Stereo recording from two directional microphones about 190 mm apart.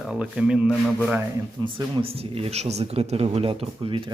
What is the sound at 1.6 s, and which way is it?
Speech, 25° right (ahead or behind).